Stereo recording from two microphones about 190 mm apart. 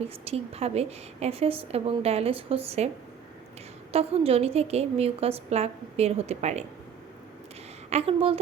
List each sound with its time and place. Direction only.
0.3 s a woman's voice: 35° right (ahead or behind)
3.9 s a woman's voice: 30° right (ahead or behind)
7.9 s a woman's voice: 30° right (ahead or behind)